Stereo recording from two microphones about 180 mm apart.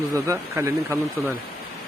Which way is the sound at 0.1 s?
15° right (ahead or behind).